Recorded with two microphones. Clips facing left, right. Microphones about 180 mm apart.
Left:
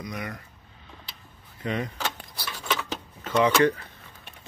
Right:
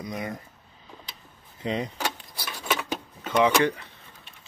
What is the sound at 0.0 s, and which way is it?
Speech, 25° right (ahead or behind).